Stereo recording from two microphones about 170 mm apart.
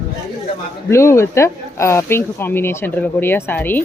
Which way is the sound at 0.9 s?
15° left (ahead or behind).